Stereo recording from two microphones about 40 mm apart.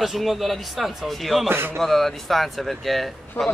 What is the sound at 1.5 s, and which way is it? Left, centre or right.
Speech, right.